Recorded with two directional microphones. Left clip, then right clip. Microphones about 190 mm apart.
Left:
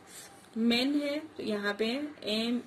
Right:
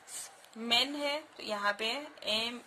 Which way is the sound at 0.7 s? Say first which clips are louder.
Right 1 dB; 65° right (ahead or behind).